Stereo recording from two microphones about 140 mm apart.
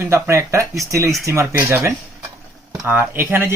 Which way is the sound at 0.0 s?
20° right (ahead or behind).